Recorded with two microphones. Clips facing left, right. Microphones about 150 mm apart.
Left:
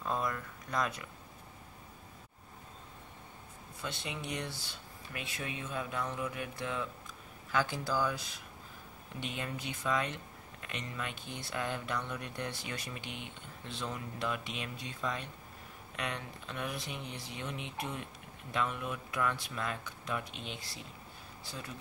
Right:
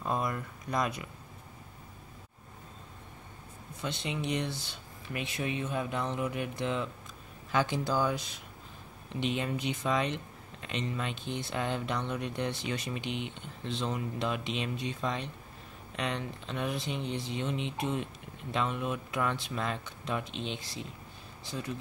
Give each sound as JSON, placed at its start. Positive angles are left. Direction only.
{"t": 0.0, "sound": "speech", "side_deg": -15}
{"t": 3.8, "sound": "speech", "side_deg": -20}